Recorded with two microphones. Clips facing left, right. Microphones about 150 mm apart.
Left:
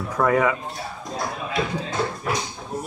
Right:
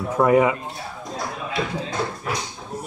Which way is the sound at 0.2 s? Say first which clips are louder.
Right 3 dB; 20° right (ahead or behind).